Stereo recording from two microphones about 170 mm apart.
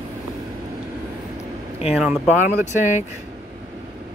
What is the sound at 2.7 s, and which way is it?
Speech, 45° left (ahead or behind).